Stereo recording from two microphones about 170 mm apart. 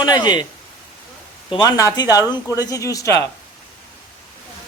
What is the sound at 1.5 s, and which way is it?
Speech, 20° left (ahead or behind).